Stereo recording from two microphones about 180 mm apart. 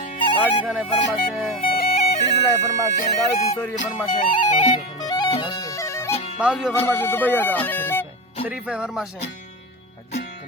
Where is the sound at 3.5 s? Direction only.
10° left (ahead or behind).